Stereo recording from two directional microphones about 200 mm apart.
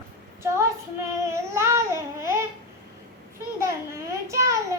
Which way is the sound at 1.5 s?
15° right (ahead or behind).